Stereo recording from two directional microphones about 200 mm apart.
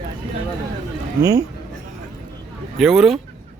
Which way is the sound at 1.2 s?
15° right (ahead or behind).